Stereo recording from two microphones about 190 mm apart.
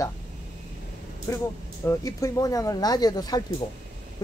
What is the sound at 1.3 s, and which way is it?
Speech, 15° left (ahead or behind).